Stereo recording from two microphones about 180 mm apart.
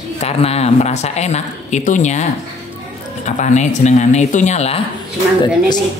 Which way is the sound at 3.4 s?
40° left (ahead or behind).